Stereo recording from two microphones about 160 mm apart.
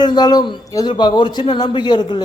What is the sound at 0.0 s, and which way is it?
A man's voice, 25° left (ahead or behind).